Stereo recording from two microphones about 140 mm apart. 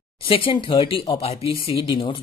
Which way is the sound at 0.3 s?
40° left (ahead or behind).